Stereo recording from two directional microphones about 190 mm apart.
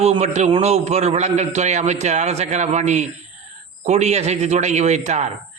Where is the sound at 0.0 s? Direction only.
35° right (ahead or behind).